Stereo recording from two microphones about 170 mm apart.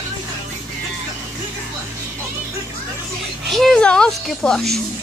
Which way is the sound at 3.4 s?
Centre (ahead or behind).